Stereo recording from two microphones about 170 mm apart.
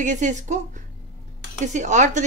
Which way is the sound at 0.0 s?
45° right (ahead or behind).